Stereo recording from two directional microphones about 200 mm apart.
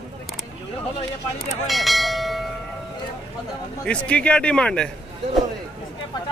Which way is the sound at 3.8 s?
5° left (ahead or behind).